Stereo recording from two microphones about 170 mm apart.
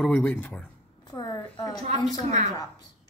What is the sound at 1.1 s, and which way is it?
Speech, 25° left (ahead or behind).